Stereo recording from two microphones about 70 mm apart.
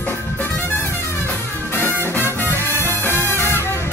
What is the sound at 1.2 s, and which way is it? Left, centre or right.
Music, left.